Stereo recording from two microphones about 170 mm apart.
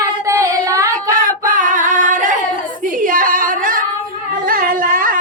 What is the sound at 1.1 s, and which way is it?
Singing, 50° right (ahead or behind).